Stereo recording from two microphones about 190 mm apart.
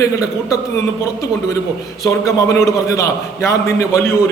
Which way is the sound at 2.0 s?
15° left (ahead or behind).